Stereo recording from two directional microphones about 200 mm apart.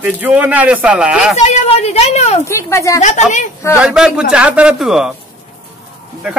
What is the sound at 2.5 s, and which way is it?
Speech, 15° left (ahead or behind).